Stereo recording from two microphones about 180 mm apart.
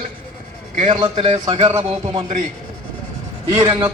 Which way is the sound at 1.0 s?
30° right (ahead or behind).